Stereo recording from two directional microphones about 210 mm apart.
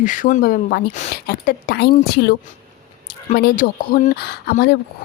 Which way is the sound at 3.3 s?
45° left (ahead or behind).